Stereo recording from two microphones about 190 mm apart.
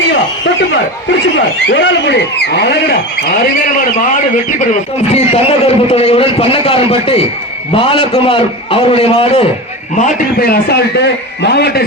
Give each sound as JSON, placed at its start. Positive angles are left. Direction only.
{"t": 1.4, "sound": "speech", "side_deg": 70}
{"t": 4.7, "sound": "a man's voice", "side_deg": 30}
{"t": 10.0, "sound": "speech", "side_deg": 50}